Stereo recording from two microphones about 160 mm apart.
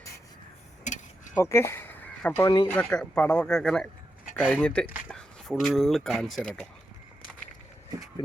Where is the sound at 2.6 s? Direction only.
5° left (ahead or behind).